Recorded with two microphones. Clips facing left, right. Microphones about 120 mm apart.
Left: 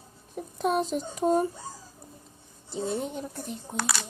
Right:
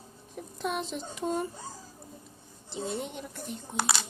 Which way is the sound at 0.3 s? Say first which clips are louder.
Left 6 dB; 40° left (ahead or behind).